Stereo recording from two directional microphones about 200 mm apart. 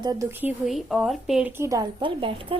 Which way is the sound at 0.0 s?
15° right (ahead or behind).